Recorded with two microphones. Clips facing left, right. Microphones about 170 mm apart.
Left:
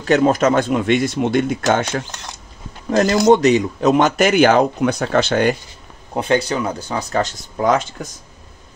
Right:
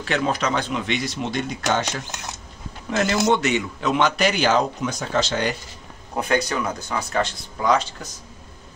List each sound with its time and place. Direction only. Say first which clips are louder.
0.0 s speech: left 9 dB; 40° left (ahead or behind)
2.9 s a man's voice: left 7 dB; 40° left (ahead or behind)
6.1 s speech: left 4 dB; 30° left (ahead or behind); by 8.1 s 50° left (ahead or behind)